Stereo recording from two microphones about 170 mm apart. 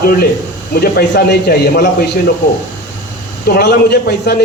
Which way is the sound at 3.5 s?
70° left (ahead or behind).